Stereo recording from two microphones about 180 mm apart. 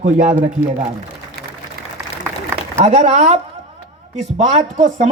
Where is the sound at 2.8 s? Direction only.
35° right (ahead or behind).